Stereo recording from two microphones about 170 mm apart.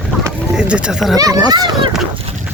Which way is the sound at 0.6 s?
5° right (ahead or behind).